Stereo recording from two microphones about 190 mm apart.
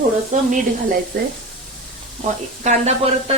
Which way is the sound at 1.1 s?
55° right (ahead or behind).